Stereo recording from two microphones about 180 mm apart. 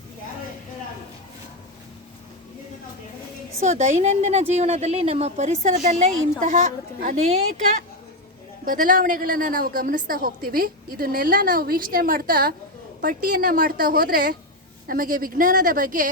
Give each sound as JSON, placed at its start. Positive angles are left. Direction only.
{"t": 3.6, "sound": "a woman's voice", "side_deg": -40}